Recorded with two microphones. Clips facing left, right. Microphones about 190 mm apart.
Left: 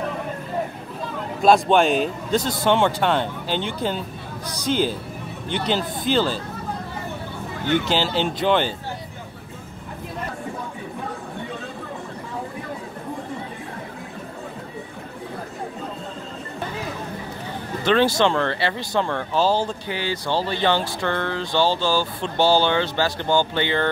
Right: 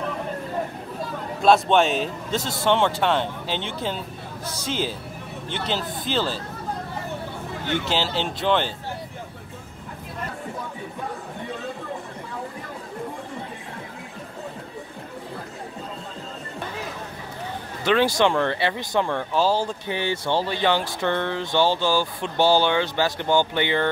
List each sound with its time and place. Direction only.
1.4 s a man's voice: centre (ahead or behind)
7.7 s a man's voice: centre (ahead or behind)
17.8 s speech: 10° right (ahead or behind)
19.9 s speech: 25° right (ahead or behind)